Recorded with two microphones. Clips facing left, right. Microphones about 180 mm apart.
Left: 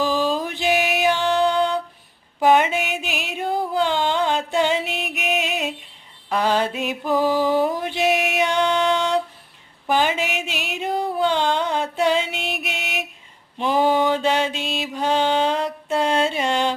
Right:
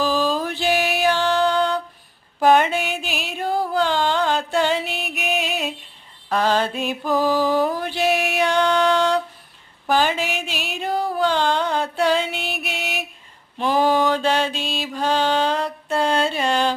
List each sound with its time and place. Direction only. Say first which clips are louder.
0.0 s music: even; 20° left (ahead or behind)
2.5 s a sound: right 1 dB; 15° left (ahead or behind)
3.1 s music: even; 65° left (ahead or behind)
3.4 s music: right 1 dB; 20° left (ahead or behind)
6.3 s mantra: right 1 dB; 15° left (ahead or behind)
9.8 s a sound: right 1 dB; 20° left (ahead or behind)
12.4 s music: even; 20° left (ahead or behind)
13.6 s mantra: even; 20° left (ahead or behind)